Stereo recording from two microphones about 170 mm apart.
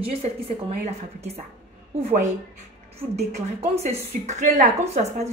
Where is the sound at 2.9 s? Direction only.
35° right (ahead or behind).